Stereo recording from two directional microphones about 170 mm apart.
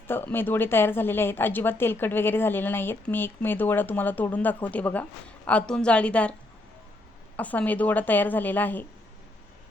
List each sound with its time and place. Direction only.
0.1 s speech: 10° left (ahead or behind)
7.3 s speech: 10° left (ahead or behind)